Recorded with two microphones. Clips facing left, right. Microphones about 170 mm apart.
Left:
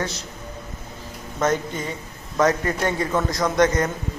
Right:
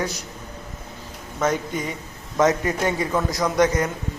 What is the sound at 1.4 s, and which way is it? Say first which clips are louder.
A man's voice: even; 15° right (ahead or behind).